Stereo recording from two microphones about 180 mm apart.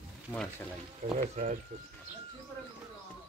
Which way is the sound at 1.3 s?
45° right (ahead or behind).